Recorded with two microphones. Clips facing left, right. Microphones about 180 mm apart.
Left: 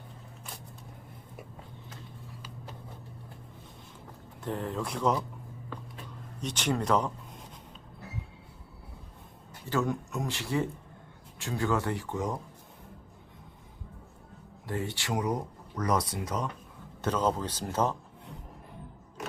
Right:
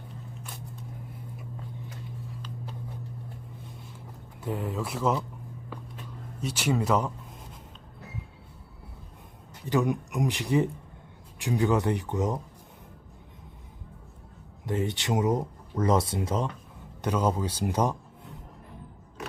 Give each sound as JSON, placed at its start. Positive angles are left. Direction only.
{"t": 4.4, "sound": "speech", "side_deg": -5}
{"t": 6.4, "sound": "speech", "side_deg": -5}
{"t": 9.6, "sound": "speech", "side_deg": -15}
{"t": 14.7, "sound": "speech", "side_deg": -20}
{"t": 17.0, "sound": "speech", "side_deg": -10}